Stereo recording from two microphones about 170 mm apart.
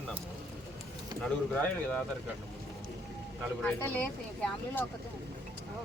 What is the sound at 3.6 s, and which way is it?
Speech, 10° left (ahead or behind).